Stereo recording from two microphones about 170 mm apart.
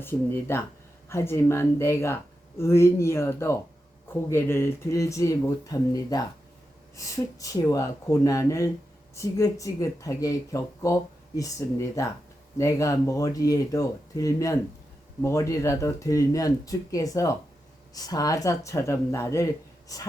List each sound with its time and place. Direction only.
0.0 s speech: 15° left (ahead or behind)